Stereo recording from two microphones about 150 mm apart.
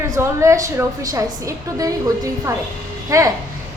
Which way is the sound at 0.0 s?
20° right (ahead or behind).